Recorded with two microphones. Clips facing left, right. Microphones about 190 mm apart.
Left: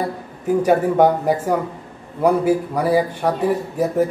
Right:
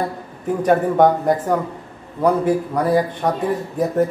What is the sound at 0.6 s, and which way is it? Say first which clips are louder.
A man's voice: even; 10° left (ahead or behind).